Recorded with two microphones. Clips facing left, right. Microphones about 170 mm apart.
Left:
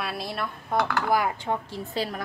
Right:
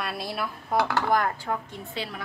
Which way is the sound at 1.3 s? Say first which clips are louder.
Left 2 dB; 25° left (ahead or behind).